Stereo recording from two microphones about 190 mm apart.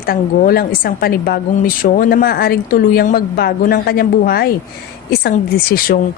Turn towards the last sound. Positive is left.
turn(degrees=50)  # may be behind; listen again after turning